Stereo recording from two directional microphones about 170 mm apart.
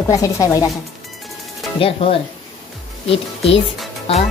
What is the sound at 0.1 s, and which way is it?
Speech, 20° left (ahead or behind).